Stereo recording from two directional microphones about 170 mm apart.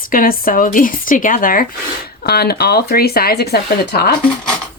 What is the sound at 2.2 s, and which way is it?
Speech, 70° left (ahead or behind).